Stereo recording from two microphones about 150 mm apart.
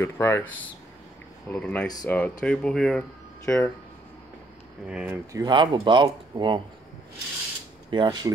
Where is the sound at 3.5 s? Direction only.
20° left (ahead or behind).